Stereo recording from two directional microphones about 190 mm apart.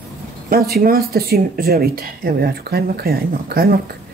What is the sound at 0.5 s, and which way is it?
Speech, 55° right (ahead or behind).